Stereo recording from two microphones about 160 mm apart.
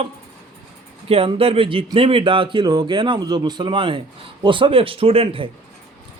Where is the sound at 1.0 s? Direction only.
35° right (ahead or behind).